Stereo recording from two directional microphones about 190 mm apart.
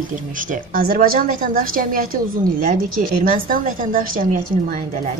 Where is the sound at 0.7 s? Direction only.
50° right (ahead or behind).